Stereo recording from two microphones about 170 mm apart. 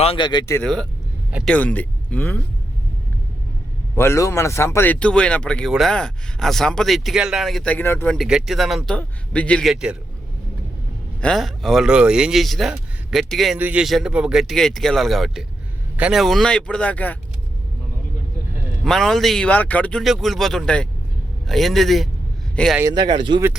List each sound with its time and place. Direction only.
0.0 s speech: 30° left (ahead or behind)
0.6 s speech: centre (ahead or behind)
3.9 s speech: 15° left (ahead or behind)
8.1 s speech: centre (ahead or behind)
11.2 s speech: 5° left (ahead or behind)
18.9 s speech: centre (ahead or behind)
22.8 s speech: 20° right (ahead or behind)